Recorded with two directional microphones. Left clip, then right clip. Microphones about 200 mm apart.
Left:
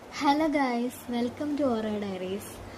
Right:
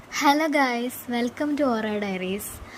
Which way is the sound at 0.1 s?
35° right (ahead or behind).